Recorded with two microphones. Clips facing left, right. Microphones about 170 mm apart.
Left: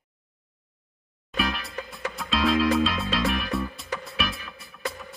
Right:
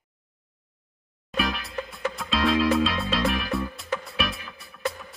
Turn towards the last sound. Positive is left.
turn(degrees=0)  # may be behind; listen again after turning